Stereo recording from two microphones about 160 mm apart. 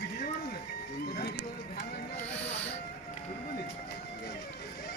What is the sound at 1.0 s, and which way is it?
Music, 75° left (ahead or behind).